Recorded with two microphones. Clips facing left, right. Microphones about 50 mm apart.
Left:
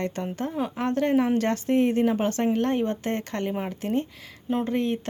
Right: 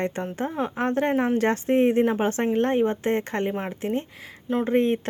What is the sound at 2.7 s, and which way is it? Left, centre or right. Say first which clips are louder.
A woman's voice: right 4 dB; centre.